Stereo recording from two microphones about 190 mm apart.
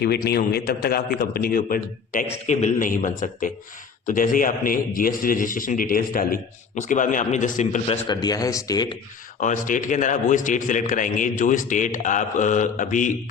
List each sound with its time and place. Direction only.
0.0 s a man's voice: 55° left (ahead or behind)
2.5 s a man's voice: 40° left (ahead or behind)
8.0 s speech: 20° left (ahead or behind)
9.4 s a man's voice: 40° left (ahead or behind)